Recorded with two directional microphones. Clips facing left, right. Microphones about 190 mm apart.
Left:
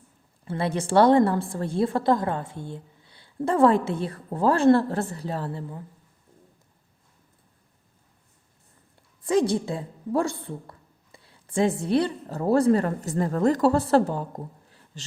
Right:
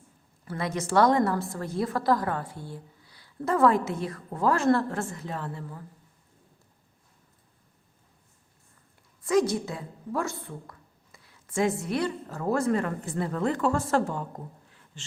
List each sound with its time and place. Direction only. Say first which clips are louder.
0.4 s a woman's voice: left 4 dB; 30° left (ahead or behind)
9.2 s a woman's voice: left 2 dB; 30° left (ahead or behind)